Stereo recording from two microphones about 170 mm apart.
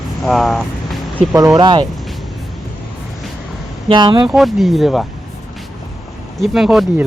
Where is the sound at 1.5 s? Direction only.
25° right (ahead or behind).